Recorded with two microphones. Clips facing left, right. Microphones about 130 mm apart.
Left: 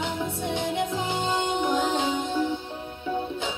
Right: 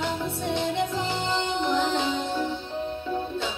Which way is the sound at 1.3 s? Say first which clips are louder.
Even; 50° left (ahead or behind).